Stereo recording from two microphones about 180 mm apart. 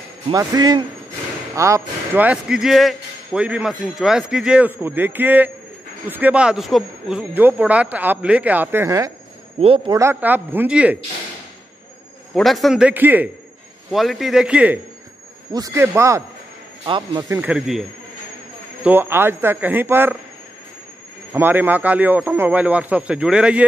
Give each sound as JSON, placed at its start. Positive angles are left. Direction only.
{"t": 0.3, "sound": "speech", "side_deg": -20}
{"t": 9.6, "sound": "a man's voice", "side_deg": -30}
{"t": 9.9, "sound": "speech", "side_deg": -10}
{"t": 12.4, "sound": "a man's voice", "side_deg": 0}
{"t": 15.5, "sound": "speech", "side_deg": -20}
{"t": 16.8, "sound": "speech", "side_deg": -25}
{"t": 17.3, "sound": "a man's voice", "side_deg": -5}
{"t": 18.9, "sound": "speech", "side_deg": -10}
{"t": 21.3, "sound": "speech", "side_deg": -10}